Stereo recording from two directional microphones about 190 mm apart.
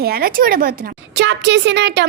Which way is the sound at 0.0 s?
55° right (ahead or behind).